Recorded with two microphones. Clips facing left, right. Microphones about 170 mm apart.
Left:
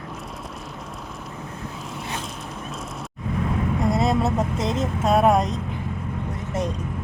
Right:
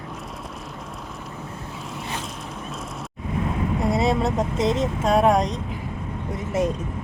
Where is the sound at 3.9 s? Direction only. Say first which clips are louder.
Right 1 dB; centre (ahead or behind).